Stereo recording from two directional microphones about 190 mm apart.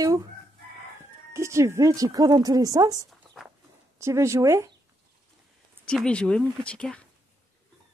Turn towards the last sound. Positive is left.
turn(degrees=5)  # may be behind; listen again after turning